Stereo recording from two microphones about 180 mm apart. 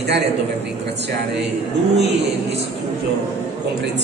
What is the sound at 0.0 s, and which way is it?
Speech, 70° right (ahead or behind).